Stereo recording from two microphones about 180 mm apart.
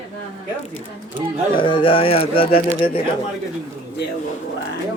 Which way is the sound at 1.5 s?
25° left (ahead or behind).